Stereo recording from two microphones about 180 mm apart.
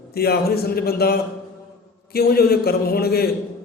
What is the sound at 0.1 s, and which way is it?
A man's voice, 60° left (ahead or behind).